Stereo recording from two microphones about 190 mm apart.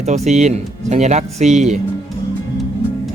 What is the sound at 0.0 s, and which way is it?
Speech, 35° right (ahead or behind).